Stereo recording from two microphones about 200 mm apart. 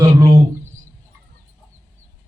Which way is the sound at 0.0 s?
15° right (ahead or behind).